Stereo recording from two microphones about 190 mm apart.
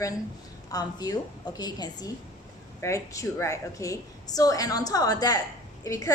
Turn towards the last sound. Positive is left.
turn(degrees=20)  # may be behind; listen again after turning